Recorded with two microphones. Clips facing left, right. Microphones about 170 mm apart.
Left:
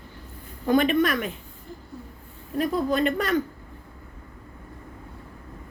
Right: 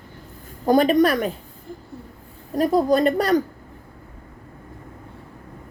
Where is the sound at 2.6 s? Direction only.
40° right (ahead or behind).